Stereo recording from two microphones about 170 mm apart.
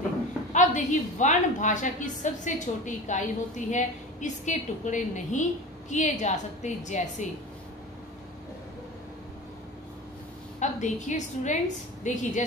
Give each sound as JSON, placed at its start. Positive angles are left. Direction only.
{"t": 0.5, "sound": "a woman's voice", "side_deg": 45}
{"t": 10.6, "sound": "a woman's voice", "side_deg": 45}